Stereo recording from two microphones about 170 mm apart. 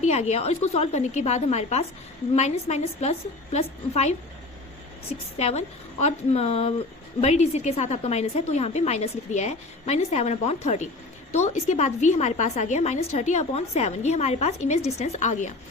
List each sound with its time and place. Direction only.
0.0 s a woman's voice: 40° left (ahead or behind)
5.4 s a woman's voice: 40° left (ahead or behind)